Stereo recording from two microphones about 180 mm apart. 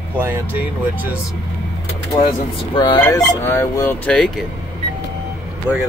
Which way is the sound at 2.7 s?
25° left (ahead or behind).